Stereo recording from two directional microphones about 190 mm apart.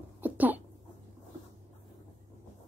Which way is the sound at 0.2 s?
10° right (ahead or behind).